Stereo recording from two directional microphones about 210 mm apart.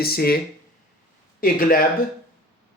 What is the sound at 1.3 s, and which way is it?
Speech, 45° left (ahead or behind).